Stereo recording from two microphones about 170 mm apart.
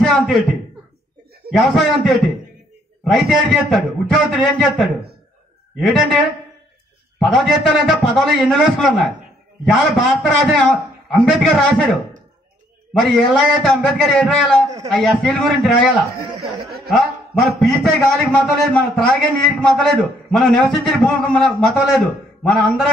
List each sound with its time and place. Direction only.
0.0 s a man's voice: centre (ahead or behind)
7.2 s a man's voice: centre (ahead or behind)
13.3 s a man's voice: centre (ahead or behind)
16.9 s a man's voice: centre (ahead or behind)